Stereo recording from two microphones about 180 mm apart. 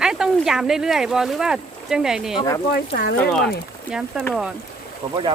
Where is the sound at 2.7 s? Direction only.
60° left (ahead or behind).